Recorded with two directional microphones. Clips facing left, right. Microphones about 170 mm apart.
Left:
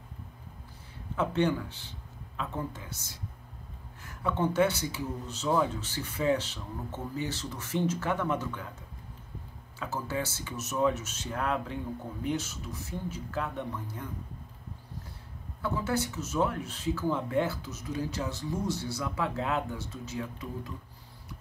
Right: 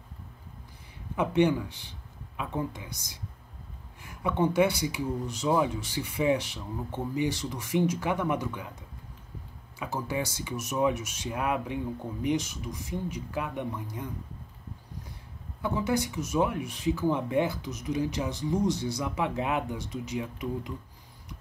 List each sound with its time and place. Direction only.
1.1 s speech: 15° right (ahead or behind)
9.8 s speech: 15° right (ahead or behind)
15.6 s speech: 15° right (ahead or behind)